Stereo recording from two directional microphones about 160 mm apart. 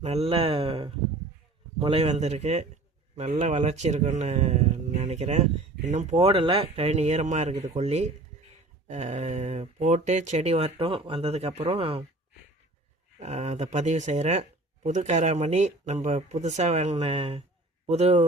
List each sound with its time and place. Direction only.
0.0 s speech: 40° right (ahead or behind)
13.1 s speech: 45° right (ahead or behind)